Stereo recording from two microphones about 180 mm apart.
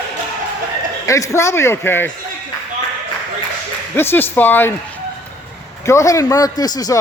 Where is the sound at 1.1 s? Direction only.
15° left (ahead or behind).